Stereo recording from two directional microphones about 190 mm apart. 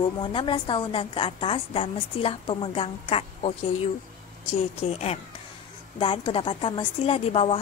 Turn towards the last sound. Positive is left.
turn(degrees=30)  # may be behind; listen again after turning